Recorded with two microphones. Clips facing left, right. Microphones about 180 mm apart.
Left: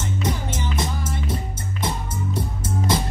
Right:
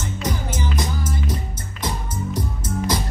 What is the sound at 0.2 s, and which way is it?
Music, 25° left (ahead or behind).